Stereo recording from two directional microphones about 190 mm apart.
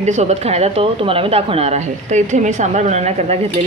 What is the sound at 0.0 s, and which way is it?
A woman's voice, 35° right (ahead or behind).